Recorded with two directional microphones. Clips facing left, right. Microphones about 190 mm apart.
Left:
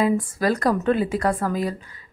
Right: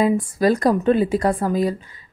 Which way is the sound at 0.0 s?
20° right (ahead or behind).